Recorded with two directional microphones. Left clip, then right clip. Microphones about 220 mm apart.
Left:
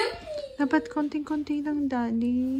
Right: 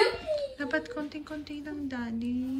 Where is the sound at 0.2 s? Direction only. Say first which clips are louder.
Left 1 dB; 25° left (ahead or behind).